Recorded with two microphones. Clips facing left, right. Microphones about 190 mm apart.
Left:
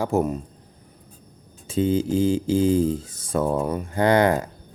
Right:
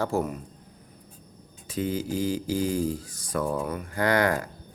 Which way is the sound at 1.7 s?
25° left (ahead or behind).